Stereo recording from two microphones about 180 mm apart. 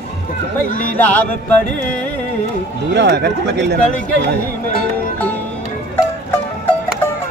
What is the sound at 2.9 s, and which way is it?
Speech, 70° right (ahead or behind).